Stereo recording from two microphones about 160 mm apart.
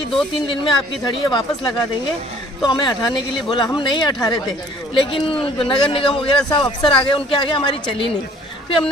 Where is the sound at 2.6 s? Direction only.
30° left (ahead or behind).